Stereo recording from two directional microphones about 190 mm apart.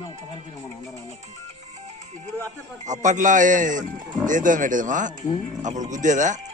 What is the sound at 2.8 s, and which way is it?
Speech, 40° right (ahead or behind).